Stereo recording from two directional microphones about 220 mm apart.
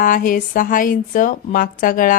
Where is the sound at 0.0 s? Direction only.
40° left (ahead or behind).